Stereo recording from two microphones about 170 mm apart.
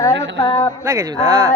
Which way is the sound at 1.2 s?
15° right (ahead or behind).